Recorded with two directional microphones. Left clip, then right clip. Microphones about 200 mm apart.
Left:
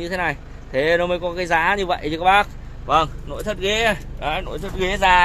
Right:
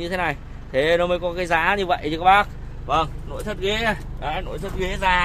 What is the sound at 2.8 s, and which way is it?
Speech, 40° left (ahead or behind).